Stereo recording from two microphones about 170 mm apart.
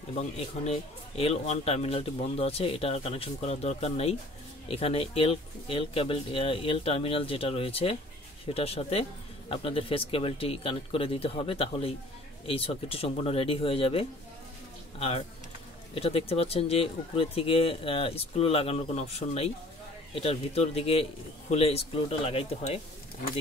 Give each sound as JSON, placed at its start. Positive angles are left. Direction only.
{"t": 0.7, "sound": "speech", "side_deg": 35}